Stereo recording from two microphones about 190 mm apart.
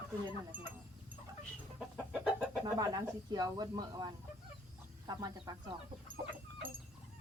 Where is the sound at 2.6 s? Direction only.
20° right (ahead or behind).